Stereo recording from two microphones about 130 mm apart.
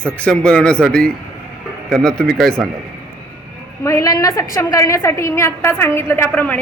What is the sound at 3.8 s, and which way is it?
A woman's voice, 25° left (ahead or behind).